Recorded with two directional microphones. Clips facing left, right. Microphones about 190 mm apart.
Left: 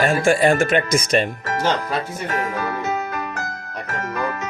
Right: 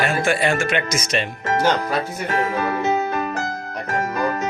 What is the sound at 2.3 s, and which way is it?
Music, 25° right (ahead or behind).